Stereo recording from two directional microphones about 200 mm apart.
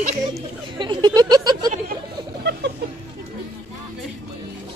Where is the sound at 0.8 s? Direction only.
20° right (ahead or behind).